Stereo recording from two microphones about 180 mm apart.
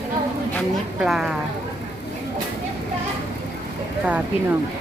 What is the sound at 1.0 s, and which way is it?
Speech, 5° right (ahead or behind).